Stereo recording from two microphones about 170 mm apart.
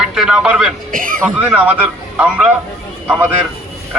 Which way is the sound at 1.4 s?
10° right (ahead or behind).